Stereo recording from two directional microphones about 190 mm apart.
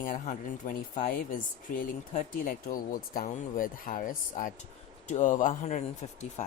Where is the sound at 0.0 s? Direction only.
45° left (ahead or behind).